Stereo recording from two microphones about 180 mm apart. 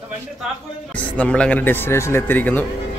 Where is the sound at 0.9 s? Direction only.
5° left (ahead or behind).